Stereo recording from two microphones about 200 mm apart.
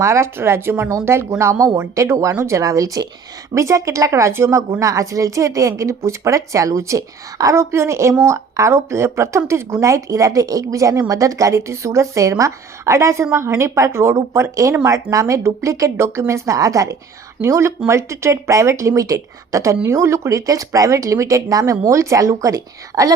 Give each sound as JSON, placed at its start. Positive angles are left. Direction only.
{"t": 0.0, "sound": "a woman's voice", "side_deg": -15}